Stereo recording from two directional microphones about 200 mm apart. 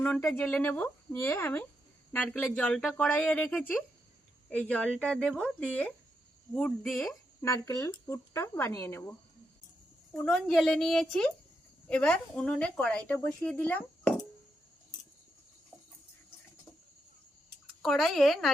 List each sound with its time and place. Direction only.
0.0 s speech: 5° left (ahead or behind)
7.4 s speech: 15° left (ahead or behind)
10.2 s speech: centre (ahead or behind)
17.8 s speech: centre (ahead or behind)